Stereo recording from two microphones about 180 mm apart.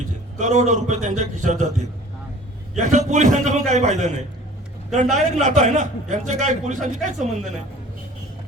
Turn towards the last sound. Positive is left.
turn(degrees=-40)  # may be behind; listen again after turning